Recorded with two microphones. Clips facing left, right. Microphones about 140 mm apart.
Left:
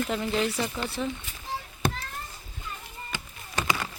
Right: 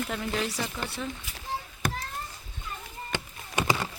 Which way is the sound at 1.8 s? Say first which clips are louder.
Left 3 dB; 25° left (ahead or behind).